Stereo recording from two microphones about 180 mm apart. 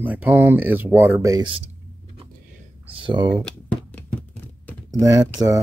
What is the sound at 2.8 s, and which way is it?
Speech, 30° right (ahead or behind).